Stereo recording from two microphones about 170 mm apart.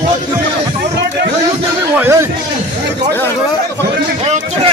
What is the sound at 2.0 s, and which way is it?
Speech, 15° right (ahead or behind).